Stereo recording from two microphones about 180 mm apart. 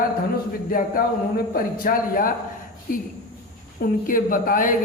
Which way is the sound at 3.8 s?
50° left (ahead or behind).